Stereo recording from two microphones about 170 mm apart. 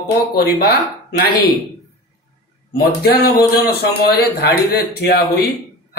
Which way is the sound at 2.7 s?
65° left (ahead or behind).